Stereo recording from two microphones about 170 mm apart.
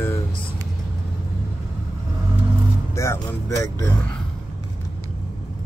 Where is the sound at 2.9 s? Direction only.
15° left (ahead or behind).